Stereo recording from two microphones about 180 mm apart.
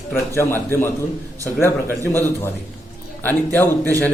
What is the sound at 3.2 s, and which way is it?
Speech, 10° left (ahead or behind).